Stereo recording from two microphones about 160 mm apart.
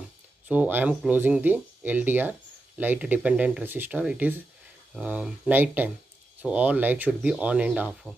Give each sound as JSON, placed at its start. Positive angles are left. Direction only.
{"t": 0.5, "sound": "speech", "side_deg": -10}